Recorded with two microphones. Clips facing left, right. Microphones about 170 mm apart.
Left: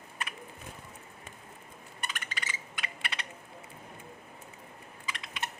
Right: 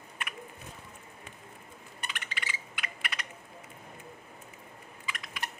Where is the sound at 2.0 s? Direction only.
45° left (ahead or behind).